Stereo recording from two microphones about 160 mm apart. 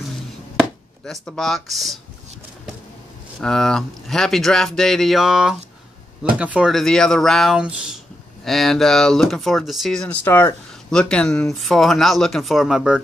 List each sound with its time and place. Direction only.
0.6 s speech: centre (ahead or behind)
3.3 s speech: 5° left (ahead or behind)